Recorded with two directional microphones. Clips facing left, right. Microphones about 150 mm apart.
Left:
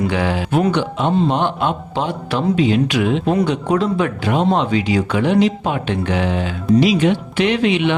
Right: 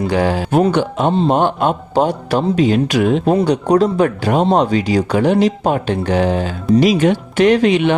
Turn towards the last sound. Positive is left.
turn(degrees=-45)  # may be behind; listen again after turning